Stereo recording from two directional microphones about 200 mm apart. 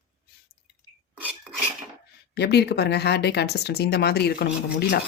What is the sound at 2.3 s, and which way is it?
Speech, 55° left (ahead or behind).